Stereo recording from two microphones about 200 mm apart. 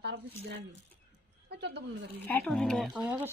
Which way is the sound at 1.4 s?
55° right (ahead or behind).